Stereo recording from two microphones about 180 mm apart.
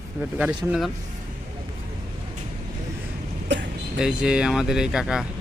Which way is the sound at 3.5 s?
75° right (ahead or behind).